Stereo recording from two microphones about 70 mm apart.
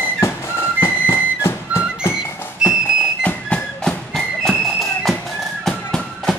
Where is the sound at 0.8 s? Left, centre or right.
Left.